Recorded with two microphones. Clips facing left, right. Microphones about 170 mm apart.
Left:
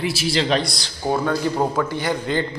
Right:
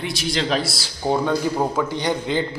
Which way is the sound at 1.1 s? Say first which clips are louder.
Even; 15° right (ahead or behind).